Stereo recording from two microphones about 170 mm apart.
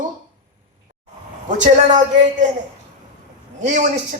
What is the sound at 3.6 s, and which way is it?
Speech, 45° right (ahead or behind).